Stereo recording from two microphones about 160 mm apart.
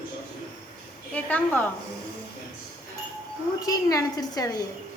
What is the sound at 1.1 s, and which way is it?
Speech, 10° left (ahead or behind).